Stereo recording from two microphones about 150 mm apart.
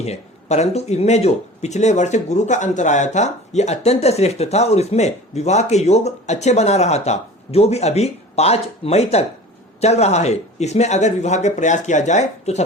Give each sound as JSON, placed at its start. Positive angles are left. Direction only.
{"t": 0.0, "sound": "speech", "side_deg": 45}